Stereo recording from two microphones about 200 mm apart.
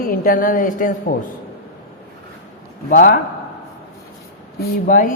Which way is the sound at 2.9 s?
40° left (ahead or behind).